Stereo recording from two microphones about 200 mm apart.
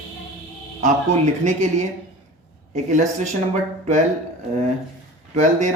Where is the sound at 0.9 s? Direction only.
40° right (ahead or behind).